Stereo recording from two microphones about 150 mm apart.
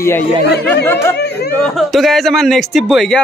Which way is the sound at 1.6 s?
Centre (ahead or behind).